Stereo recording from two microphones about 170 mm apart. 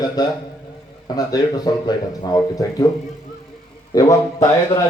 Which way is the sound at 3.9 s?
20° left (ahead or behind).